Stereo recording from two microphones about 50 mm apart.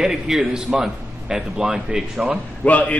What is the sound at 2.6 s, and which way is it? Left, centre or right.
Speech, left.